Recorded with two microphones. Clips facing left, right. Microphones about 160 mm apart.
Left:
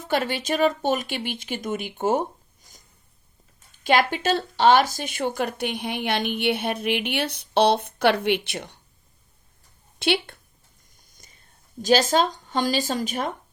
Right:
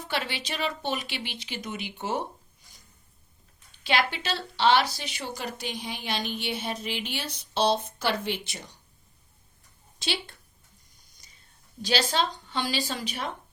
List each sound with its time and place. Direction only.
0.0 s speech: 45° left (ahead or behind); by 8.8 s 65° left (ahead or behind)
10.0 s speech: 60° left (ahead or behind)
10.9 s a sound: 50° left (ahead or behind)